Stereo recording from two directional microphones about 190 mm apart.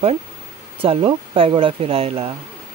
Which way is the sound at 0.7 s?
30° right (ahead or behind).